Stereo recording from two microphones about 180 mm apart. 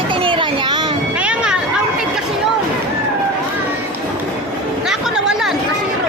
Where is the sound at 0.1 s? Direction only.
30° right (ahead or behind).